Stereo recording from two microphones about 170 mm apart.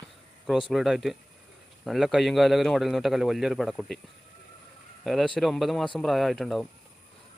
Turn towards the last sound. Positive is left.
turn(degrees=0)  # may be behind; listen again after turning